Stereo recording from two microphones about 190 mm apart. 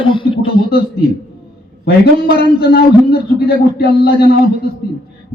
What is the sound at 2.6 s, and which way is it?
A man's voice, 55° left (ahead or behind).